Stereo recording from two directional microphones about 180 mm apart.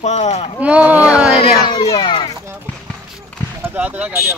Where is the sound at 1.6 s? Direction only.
25° left (ahead or behind).